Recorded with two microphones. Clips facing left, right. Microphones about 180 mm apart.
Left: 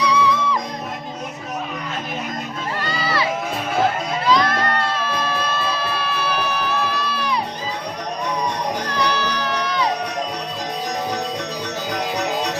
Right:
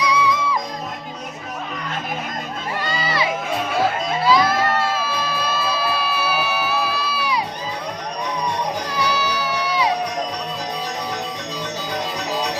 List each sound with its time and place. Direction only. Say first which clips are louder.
0.0 s music: left 1 dB; 10° right (ahead or behind)
2.8 s crowd: even; 15° right (ahead or behind)
4.3 s music: right 1 dB; 5° right (ahead or behind)
8.9 s music: left 1 dB; 10° right (ahead or behind)